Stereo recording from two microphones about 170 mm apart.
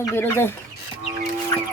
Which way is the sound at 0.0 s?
15° left (ahead or behind).